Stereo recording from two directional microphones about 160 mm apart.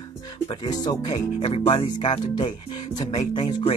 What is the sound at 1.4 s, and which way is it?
Speech, 35° left (ahead or behind).